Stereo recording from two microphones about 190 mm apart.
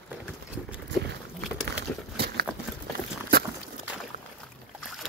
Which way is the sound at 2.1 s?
60° right (ahead or behind).